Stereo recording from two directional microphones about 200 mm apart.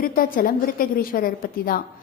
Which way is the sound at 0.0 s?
45° left (ahead or behind).